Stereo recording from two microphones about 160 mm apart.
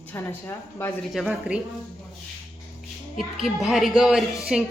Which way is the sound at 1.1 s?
5° right (ahead or behind).